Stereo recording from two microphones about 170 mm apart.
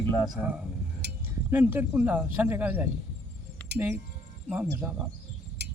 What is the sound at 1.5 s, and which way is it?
Speech, 15° right (ahead or behind).